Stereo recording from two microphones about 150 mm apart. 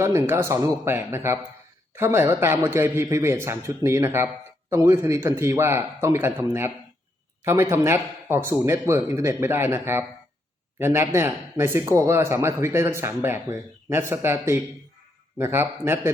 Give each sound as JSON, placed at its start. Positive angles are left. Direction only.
{"t": 0.0, "sound": "speech", "side_deg": -20}